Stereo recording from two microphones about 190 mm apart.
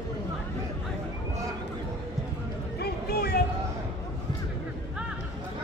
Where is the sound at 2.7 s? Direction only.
55° left (ahead or behind).